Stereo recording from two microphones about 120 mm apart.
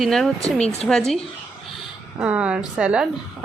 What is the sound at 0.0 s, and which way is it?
Speech, centre (ahead or behind).